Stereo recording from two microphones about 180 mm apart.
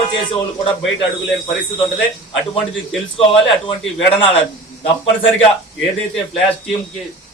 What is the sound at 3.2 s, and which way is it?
Speech, 30° left (ahead or behind).